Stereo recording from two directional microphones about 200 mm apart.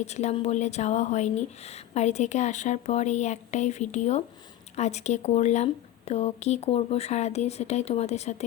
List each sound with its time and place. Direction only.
0.0 s speech: 35° left (ahead or behind)